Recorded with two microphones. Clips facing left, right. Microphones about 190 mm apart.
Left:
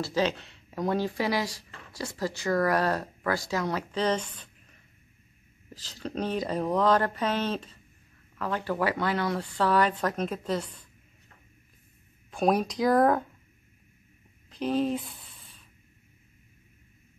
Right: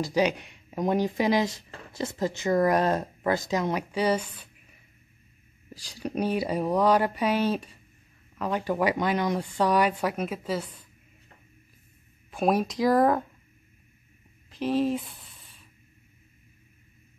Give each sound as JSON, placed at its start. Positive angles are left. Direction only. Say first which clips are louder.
{"t": 0.0, "sound": "speech", "louder": "right 3 dB", "side_deg": -15}
{"t": 12.3, "sound": "speech", "louder": "even", "side_deg": -5}
{"t": 14.5, "sound": "speech", "louder": "right 2 dB", "side_deg": 0}